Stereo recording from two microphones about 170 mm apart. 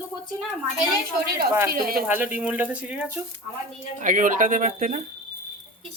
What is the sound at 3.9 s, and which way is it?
Speech, 50° right (ahead or behind).